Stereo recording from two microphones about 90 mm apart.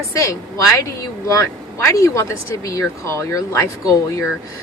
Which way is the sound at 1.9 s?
35° left (ahead or behind).